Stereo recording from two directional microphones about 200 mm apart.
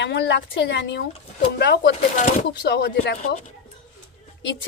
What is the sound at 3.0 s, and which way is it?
Speech, 45° left (ahead or behind).